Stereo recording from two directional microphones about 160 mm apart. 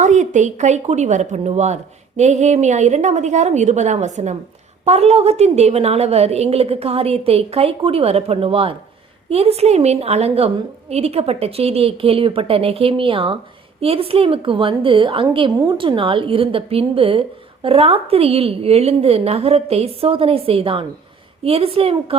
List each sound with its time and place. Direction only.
0.0 s a woman's voice: 50° right (ahead or behind)